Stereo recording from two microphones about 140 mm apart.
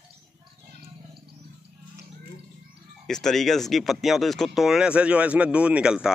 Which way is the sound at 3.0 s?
5° left (ahead or behind).